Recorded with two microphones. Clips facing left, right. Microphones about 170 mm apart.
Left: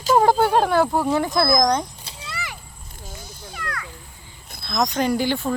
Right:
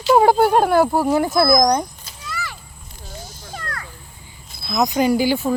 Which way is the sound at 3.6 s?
35° right (ahead or behind).